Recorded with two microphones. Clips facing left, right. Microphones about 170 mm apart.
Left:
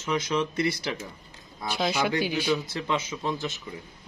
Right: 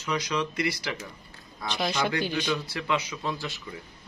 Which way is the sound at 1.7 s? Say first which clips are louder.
Left 2 dB; 5° left (ahead or behind).